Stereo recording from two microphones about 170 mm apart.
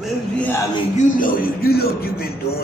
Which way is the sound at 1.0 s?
55° left (ahead or behind).